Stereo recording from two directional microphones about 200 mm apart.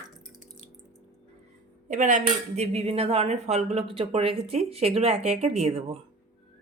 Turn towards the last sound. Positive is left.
turn(degrees=-30)  # may be behind; listen again after turning